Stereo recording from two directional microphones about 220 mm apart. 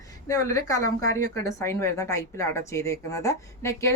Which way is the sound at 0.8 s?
80° left.